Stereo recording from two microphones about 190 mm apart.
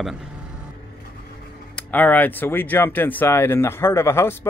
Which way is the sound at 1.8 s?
10° left (ahead or behind).